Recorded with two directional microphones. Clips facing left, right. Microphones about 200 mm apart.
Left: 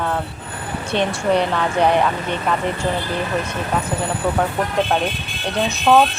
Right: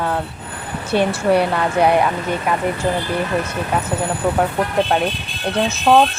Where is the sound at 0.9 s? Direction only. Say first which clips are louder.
Right 3 dB; 5° right (ahead or behind).